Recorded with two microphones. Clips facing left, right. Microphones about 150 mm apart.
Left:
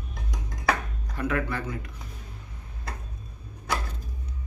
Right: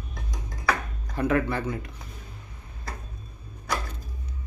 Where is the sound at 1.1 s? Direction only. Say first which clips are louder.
Right 4 dB; 25° right (ahead or behind).